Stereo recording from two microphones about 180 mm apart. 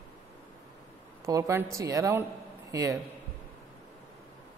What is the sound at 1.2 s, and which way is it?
A woman's voice, 15° right (ahead or behind).